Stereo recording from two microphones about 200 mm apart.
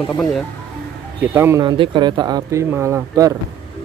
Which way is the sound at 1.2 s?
15° right (ahead or behind).